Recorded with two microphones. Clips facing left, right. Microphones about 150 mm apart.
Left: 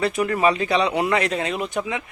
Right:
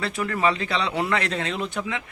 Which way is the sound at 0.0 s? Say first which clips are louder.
Left 4 dB; 15° left (ahead or behind).